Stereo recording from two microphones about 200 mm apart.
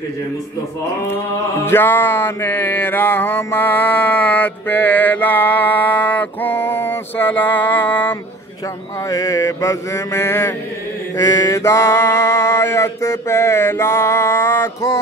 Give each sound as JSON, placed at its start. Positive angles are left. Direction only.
{"t": 1.7, "sound": "mantra", "side_deg": 10}